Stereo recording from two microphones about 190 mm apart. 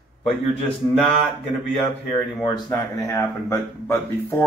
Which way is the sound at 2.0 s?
Centre (ahead or behind).